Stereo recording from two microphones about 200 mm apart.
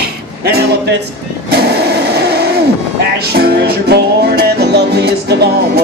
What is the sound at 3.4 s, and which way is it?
Music, 50° right (ahead or behind).